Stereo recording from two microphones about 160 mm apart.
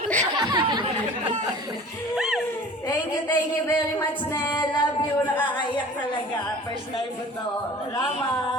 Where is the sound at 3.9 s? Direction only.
15° left (ahead or behind).